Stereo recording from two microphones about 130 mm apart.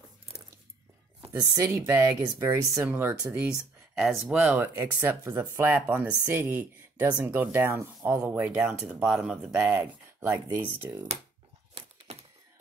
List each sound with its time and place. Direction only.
1.3 s speech: 25° right (ahead or behind)
1.8 s speech: 15° right (ahead or behind)
4.0 s speech: centre (ahead or behind)